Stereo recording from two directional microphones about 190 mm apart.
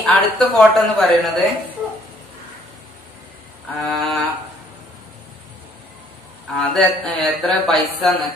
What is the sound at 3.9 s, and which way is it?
Speech, centre (ahead or behind).